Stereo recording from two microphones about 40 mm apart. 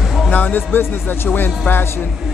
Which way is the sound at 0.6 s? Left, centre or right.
Left.